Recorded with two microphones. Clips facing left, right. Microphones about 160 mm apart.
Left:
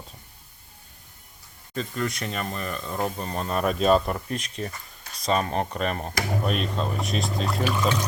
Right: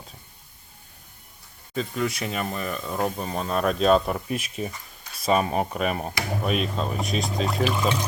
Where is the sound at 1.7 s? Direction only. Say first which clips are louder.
Right 2 dB; 5° right (ahead or behind).